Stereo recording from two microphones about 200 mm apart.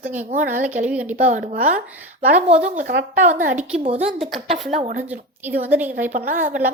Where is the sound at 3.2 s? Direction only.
40° right (ahead or behind).